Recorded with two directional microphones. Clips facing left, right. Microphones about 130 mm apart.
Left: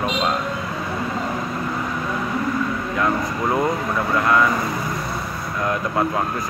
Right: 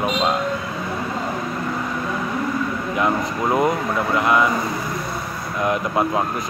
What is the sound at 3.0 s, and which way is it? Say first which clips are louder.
Speech: right 1 dB; 15° right (ahead or behind).